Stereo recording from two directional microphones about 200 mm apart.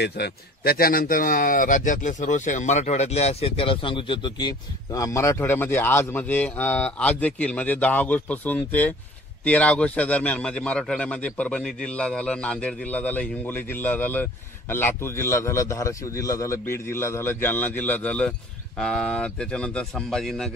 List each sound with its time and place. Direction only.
0.0 s a man's voice: 50° left (ahead or behind); by 20.5 s centre (ahead or behind)